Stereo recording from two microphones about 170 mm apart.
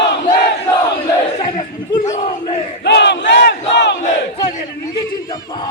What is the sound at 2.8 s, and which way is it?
Battle cry, 75° left (ahead or behind).